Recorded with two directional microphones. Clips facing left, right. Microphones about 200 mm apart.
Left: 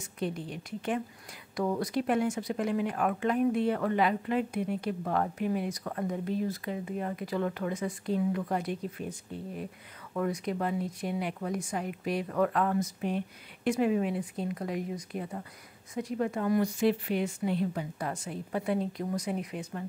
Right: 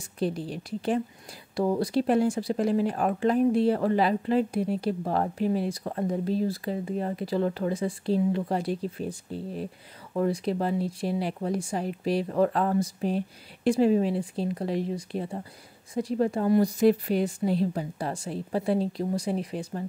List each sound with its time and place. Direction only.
0.2 s speech: 35° right (ahead or behind)